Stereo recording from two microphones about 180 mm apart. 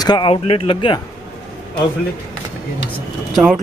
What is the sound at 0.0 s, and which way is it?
Speech, 25° left (ahead or behind).